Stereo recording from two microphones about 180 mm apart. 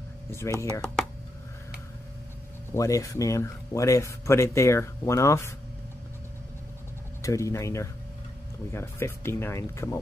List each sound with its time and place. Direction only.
0.3 s speech: 15° left (ahead or behind)
2.7 s speech: 15° left (ahead or behind)
7.2 s speech: 15° left (ahead or behind)